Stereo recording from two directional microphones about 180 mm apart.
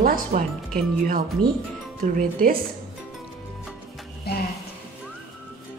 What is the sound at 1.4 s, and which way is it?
Speech, 5° left (ahead or behind).